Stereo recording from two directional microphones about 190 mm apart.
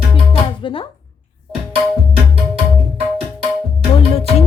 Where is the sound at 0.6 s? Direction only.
30° left (ahead or behind).